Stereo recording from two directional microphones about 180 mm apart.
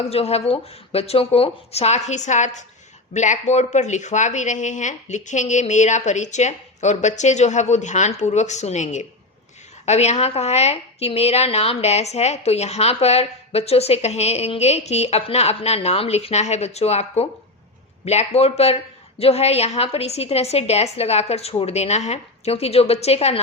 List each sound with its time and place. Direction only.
0.0 s a woman's voice: 35° left (ahead or behind)